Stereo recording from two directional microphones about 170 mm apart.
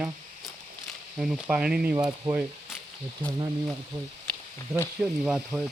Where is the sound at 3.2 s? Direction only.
25° right (ahead or behind).